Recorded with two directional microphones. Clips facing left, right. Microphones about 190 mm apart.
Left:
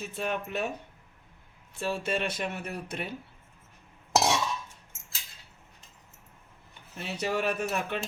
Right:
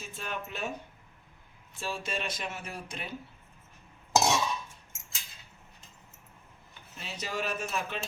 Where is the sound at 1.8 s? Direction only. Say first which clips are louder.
Left 5 dB; 60° left (ahead or behind).